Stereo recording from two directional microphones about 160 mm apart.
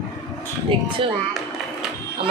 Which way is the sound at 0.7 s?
35° right (ahead or behind).